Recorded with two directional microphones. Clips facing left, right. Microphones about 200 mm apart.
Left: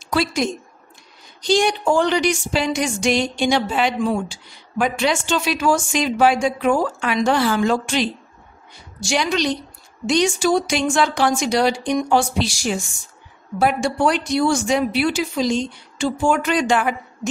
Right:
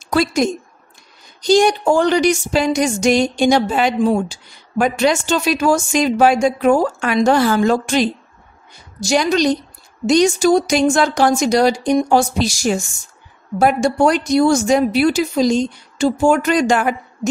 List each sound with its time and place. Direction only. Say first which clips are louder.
0.1 s a woman's voice: right 4 dB; 45° right (ahead or behind)